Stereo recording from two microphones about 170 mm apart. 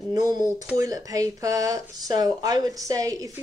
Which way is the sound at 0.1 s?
20° right (ahead or behind).